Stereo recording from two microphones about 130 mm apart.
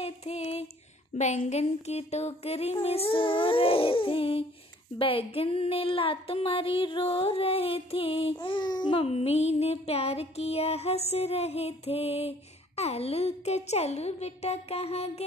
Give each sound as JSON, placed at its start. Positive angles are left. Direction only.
{"t": 0.0, "sound": "music", "side_deg": 55}
{"t": 1.1, "sound": "music", "side_deg": 65}
{"t": 9.0, "sound": "music", "side_deg": 55}